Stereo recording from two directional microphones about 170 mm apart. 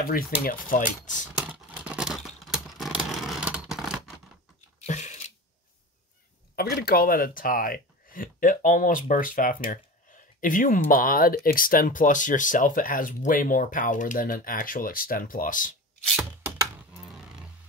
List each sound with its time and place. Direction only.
0.4 s speech: 55° left (ahead or behind)
1.3 s vehicle: 10° right (ahead or behind)
4.8 s a sound: 45° left (ahead or behind)
6.5 s speech: 65° left (ahead or behind)
16.9 s roar: 5° right (ahead or behind)